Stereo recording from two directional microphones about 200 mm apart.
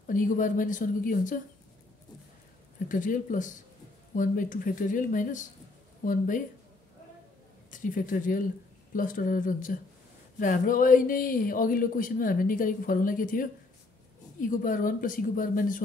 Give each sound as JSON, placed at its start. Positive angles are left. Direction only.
{"t": 0.0, "sound": "a woman's voice", "side_deg": 40}
{"t": 2.9, "sound": "a woman's voice", "side_deg": 40}
{"t": 7.7, "sound": "a woman's voice", "side_deg": 40}